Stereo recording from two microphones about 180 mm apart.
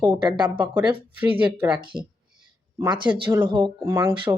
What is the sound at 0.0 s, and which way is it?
Speech, 25° right (ahead or behind).